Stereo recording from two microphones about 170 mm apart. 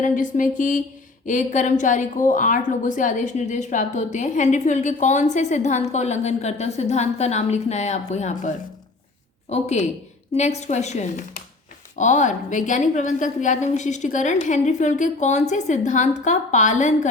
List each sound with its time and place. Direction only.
0.0 s a woman's voice: 50° left (ahead or behind)